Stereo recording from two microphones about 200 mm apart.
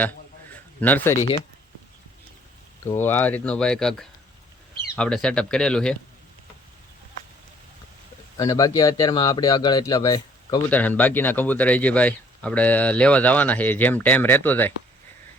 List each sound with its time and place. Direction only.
0.8 s speech: 10° left (ahead or behind)
1.1 s speech: 35° left (ahead or behind)
2.8 s speech: 10° left (ahead or behind)
8.4 s speech: 15° left (ahead or behind)
10.7 s speech: 10° left (ahead or behind)